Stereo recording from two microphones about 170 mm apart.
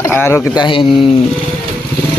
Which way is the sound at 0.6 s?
30° left (ahead or behind).